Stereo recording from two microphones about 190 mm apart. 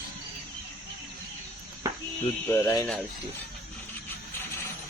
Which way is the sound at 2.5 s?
15° left (ahead or behind).